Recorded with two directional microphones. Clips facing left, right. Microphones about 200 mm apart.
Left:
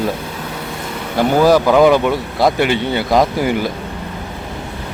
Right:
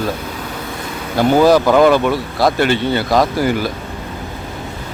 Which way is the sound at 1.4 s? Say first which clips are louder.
Left 1 dB; 5° left (ahead or behind).